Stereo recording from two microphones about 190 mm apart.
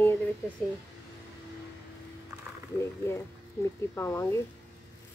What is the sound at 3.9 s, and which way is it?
Speech, 15° left (ahead or behind).